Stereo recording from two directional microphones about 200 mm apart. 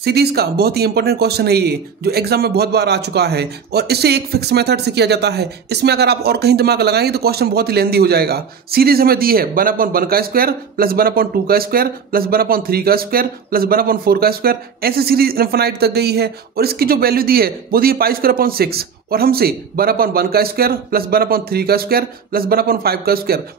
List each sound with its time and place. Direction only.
0.0 s speech: 55° right (ahead or behind)